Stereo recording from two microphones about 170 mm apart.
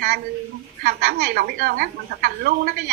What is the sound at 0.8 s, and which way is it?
A woman's voice, 65° right (ahead or behind).